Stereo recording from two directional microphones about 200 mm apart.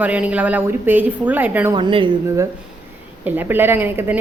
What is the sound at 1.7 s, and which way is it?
A woman's voice, 25° right (ahead or behind).